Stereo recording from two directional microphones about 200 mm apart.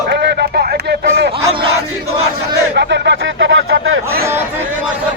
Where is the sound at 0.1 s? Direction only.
55° right (ahead or behind).